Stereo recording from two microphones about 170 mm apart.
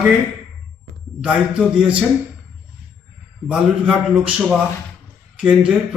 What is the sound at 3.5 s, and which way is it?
A man's voice, 5° right (ahead or behind).